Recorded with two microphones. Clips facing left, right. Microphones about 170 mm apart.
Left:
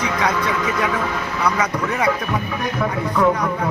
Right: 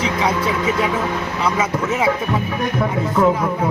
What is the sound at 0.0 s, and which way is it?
A man's voice, 25° right (ahead or behind).